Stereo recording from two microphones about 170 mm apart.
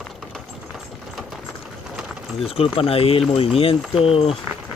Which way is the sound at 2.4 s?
35° left (ahead or behind).